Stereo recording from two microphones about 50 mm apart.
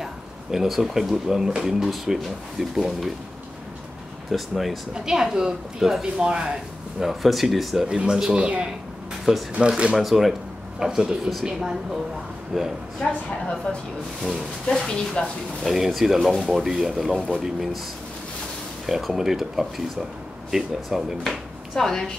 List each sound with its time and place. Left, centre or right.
0.0 s a woman's voice: centre
4.3 s speech: centre
4.9 s a woman's voice: centre
7.0 s speech: centre
7.9 s a woman's voice: centre
9.9 s a woman's voice: centre
13.0 s a woman's voice: centre
15.6 s a woman's voice: centre
18.9 s a woman's voice: centre
21.2 s speech: centre